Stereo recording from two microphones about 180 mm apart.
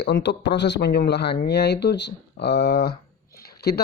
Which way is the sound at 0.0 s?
70° left (ahead or behind).